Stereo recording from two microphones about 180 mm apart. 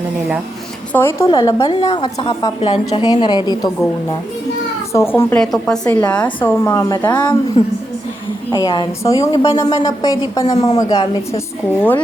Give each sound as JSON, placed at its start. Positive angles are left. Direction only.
{"t": 0.9, "sound": "a woman's voice", "side_deg": 15}
{"t": 4.9, "sound": "a woman's voice", "side_deg": 15}
{"t": 7.6, "sound": "a woman's voice", "side_deg": 35}
{"t": 8.5, "sound": "a woman's voice", "side_deg": 20}